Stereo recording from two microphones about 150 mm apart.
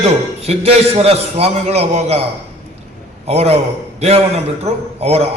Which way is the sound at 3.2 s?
45° right (ahead or behind).